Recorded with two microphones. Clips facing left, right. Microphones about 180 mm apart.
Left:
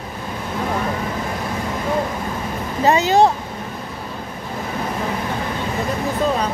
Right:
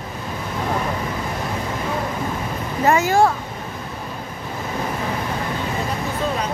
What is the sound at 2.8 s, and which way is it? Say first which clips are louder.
Speech: left 2 dB; 20° left (ahead or behind).